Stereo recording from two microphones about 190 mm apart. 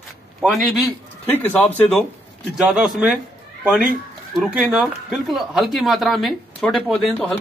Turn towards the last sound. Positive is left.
turn(degrees=5)  # may be behind; listen again after turning